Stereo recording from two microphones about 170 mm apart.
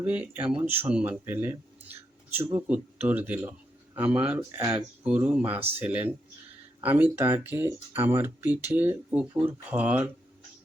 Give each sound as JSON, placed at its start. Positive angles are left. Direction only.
{"t": 0.0, "sound": "speech", "side_deg": -10}